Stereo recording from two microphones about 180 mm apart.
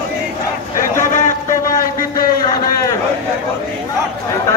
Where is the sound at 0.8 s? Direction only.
45° left (ahead or behind).